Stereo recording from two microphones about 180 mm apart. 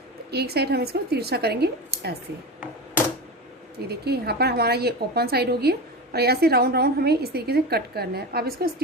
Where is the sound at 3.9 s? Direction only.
60° right (ahead or behind).